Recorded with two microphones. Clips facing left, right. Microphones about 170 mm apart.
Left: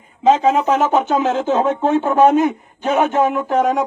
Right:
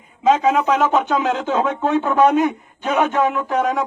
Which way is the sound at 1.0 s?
45° left (ahead or behind).